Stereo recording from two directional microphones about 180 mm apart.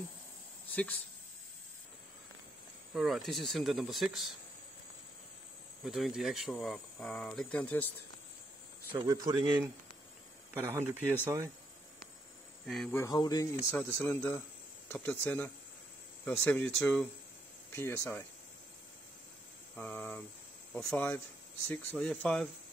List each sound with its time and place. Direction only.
0.7 s a sound: 10° left (ahead or behind)
2.9 s speech: centre (ahead or behind)
5.9 s speech: centre (ahead or behind)
8.9 s speech: 20° right (ahead or behind)
12.6 s speech: centre (ahead or behind)
12.9 s speech: 20° left (ahead or behind)
19.8 s speech: 10° left (ahead or behind)